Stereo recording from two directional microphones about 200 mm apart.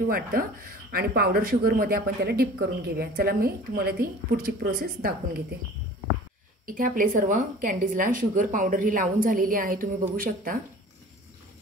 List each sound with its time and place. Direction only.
0.0 s speech: 45° right (ahead or behind)
6.6 s speech: 45° right (ahead or behind)